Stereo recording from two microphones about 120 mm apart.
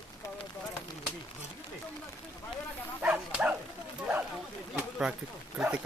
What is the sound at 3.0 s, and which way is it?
Bow-wow, 10° right (ahead or behind).